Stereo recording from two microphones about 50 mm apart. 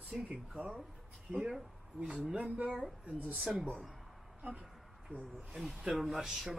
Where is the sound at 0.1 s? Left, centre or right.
Centre.